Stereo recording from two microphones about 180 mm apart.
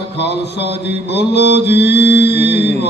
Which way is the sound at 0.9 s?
70° left (ahead or behind).